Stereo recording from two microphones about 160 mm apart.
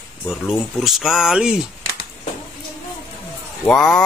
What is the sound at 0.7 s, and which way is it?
Speech, centre (ahead or behind).